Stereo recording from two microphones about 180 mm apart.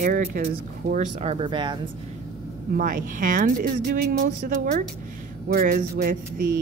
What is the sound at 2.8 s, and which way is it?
Speech, 45° right (ahead or behind).